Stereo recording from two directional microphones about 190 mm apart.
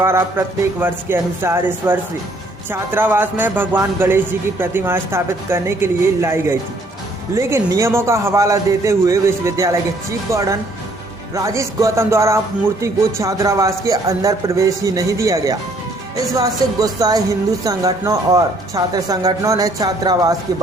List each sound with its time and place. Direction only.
0.0 s a man's voice: 15° right (ahead or behind)